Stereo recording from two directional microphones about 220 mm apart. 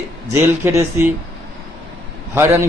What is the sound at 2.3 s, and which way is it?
Speech, 10° right (ahead or behind).